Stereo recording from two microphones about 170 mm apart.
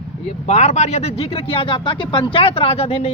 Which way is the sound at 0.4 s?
40° left (ahead or behind).